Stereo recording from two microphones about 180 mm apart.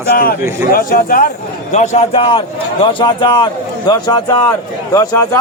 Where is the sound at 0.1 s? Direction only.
60° left (ahead or behind); by 2.0 s 40° left (ahead or behind).